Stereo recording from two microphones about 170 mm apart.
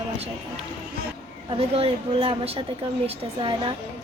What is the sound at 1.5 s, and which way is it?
Speech, 35° right (ahead or behind).